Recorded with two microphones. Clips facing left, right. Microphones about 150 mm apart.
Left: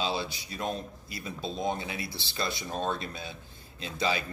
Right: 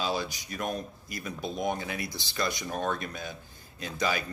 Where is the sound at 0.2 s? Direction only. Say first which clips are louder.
Even; 25° left (ahead or behind).